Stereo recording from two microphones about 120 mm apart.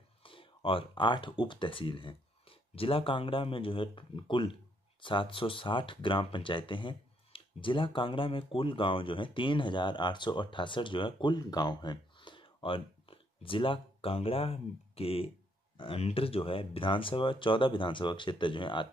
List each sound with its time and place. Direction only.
0.2 s speech: 45° left (ahead or behind)